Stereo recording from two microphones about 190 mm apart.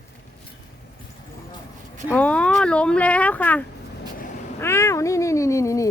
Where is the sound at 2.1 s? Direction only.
5° left (ahead or behind).